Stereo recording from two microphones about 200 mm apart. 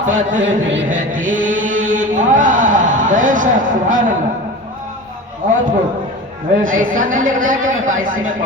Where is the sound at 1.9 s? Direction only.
40° right (ahead or behind).